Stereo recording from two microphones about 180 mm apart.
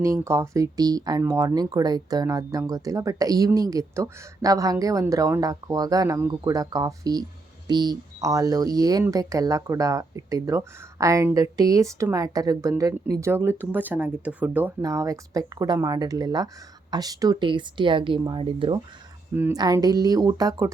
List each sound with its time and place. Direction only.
0.0 s speech: 15° right (ahead or behind)
19.4 s speech: 15° right (ahead or behind)